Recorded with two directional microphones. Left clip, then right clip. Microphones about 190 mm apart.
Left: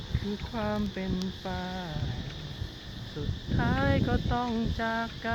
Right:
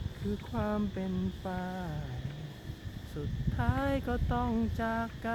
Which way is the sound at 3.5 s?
10° right (ahead or behind).